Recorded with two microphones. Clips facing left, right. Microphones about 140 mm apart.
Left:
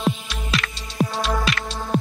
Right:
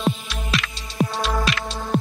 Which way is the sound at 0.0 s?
Centre (ahead or behind).